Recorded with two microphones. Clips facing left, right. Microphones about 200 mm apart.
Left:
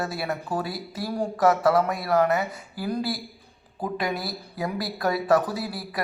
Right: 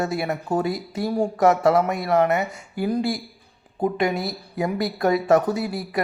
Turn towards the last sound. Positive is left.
turn(degrees=-25)  # may be behind; listen again after turning